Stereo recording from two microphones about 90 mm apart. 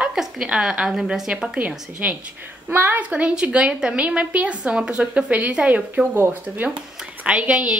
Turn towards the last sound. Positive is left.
turn(degrees=-15)  # may be behind; listen again after turning